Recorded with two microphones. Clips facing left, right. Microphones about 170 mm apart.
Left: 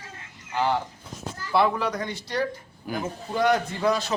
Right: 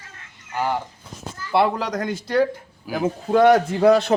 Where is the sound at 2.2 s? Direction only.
50° right (ahead or behind).